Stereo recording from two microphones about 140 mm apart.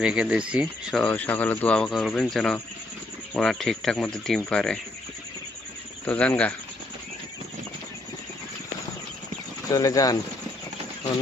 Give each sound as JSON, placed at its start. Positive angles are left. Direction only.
{"t": 0.0, "sound": "speech", "side_deg": -5}
{"t": 6.1, "sound": "speech", "side_deg": 10}
{"t": 9.7, "sound": "speech", "side_deg": 25}